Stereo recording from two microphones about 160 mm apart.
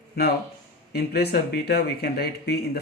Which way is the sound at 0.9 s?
90° left.